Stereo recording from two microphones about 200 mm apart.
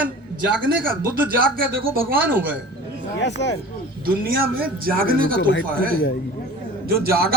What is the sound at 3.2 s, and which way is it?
Speech, 60° left (ahead or behind).